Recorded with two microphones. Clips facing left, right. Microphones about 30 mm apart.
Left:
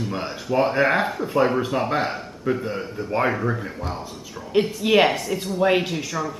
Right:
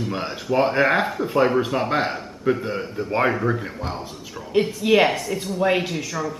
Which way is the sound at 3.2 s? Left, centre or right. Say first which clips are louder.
Right 2 dB; centre.